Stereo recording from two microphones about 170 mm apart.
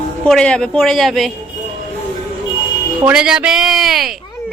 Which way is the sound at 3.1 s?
5° right (ahead or behind).